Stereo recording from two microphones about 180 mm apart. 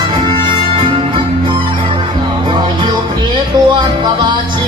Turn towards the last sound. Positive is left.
turn(degrees=-25)  # may be behind; listen again after turning